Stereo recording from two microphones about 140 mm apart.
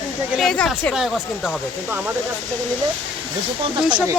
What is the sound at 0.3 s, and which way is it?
Speech, 5° left (ahead or behind).